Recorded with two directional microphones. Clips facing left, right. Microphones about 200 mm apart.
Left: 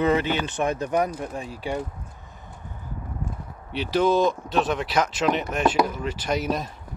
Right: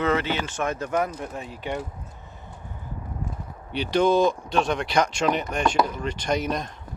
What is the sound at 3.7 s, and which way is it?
Speech, 5° left (ahead or behind).